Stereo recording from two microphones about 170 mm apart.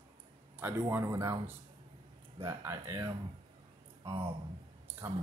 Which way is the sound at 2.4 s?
15° right (ahead or behind).